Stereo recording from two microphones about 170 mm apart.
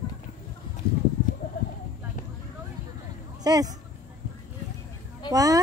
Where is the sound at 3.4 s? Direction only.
20° right (ahead or behind).